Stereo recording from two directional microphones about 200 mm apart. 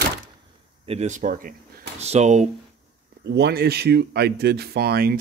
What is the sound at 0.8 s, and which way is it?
Speech, 30° right (ahead or behind).